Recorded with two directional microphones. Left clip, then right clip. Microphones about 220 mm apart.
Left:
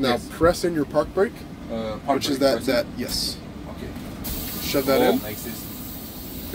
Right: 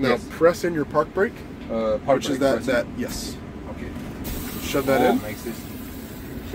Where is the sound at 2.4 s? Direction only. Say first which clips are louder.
Even; 5° left (ahead or behind).